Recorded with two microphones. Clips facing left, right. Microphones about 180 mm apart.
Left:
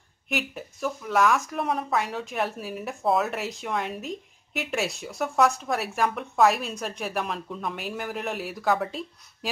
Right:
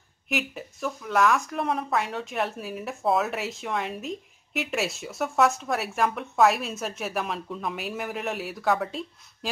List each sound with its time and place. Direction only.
0.3 s speech: centre (ahead or behind)